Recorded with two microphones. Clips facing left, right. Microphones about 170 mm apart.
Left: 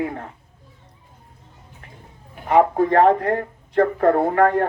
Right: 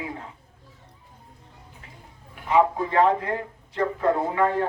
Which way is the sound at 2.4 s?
55° left (ahead or behind).